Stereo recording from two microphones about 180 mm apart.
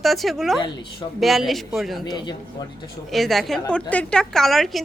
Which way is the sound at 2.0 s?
25° left (ahead or behind).